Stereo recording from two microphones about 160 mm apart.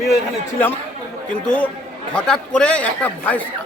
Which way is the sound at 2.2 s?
5° left (ahead or behind).